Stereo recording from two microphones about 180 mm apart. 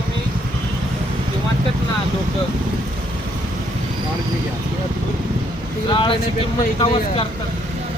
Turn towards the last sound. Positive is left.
turn(degrees=30)  # may be behind; listen again after turning